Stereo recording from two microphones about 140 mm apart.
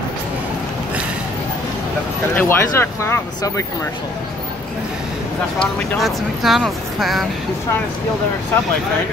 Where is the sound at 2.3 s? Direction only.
20° left (ahead or behind).